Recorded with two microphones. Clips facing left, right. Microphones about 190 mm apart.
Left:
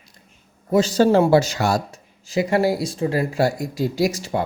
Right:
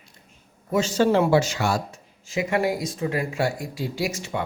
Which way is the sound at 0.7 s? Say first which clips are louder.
Left 4 dB; 35° left (ahead or behind).